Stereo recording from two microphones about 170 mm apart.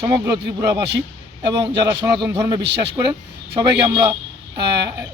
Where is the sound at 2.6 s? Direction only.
80° right.